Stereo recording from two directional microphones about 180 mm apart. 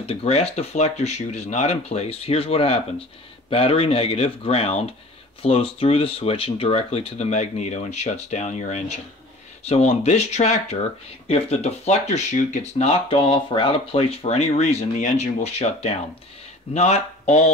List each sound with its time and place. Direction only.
0.0 s speech: 35° left (ahead or behind)